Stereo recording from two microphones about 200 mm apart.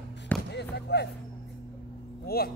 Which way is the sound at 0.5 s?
55° left (ahead or behind).